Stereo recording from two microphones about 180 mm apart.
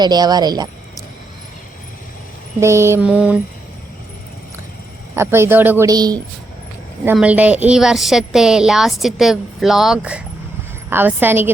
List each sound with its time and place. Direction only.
0.0 s speech: 20° right (ahead or behind)
2.6 s speech: 15° right (ahead or behind)
5.1 s speech: 15° right (ahead or behind)
7.0 s a woman's voice: 10° right (ahead or behind)